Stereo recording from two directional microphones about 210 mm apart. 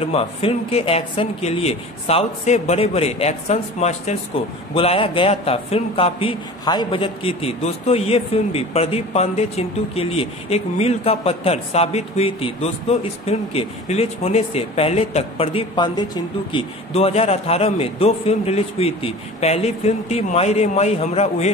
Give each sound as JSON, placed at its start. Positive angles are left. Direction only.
{"t": 0.0, "sound": "a man's voice", "side_deg": 30}